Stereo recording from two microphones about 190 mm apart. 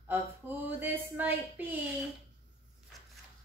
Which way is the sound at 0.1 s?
10° right (ahead or behind).